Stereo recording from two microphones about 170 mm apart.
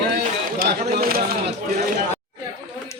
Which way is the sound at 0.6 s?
60° right (ahead or behind).